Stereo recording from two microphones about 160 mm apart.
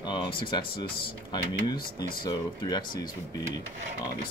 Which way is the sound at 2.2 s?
25° left (ahead or behind).